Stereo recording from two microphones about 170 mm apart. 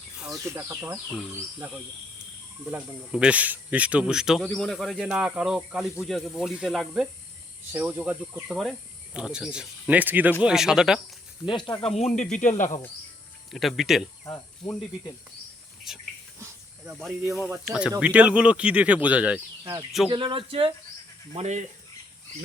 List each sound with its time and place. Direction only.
0.3 s speech: 20° right (ahead or behind)
2.6 s speech: 5° right (ahead or behind)
11.4 s speech: 25° left (ahead or behind)
11.8 s speech: 40° left (ahead or behind)
13.5 s speech: centre (ahead or behind)
15.9 s speech: centre (ahead or behind)
20.1 s speech: 30° right (ahead or behind)
21.3 s speech: 40° right (ahead or behind)